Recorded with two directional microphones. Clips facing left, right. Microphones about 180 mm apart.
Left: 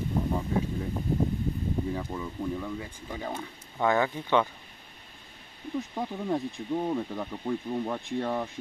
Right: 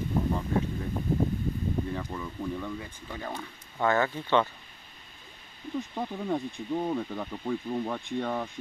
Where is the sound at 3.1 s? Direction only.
20° left (ahead or behind).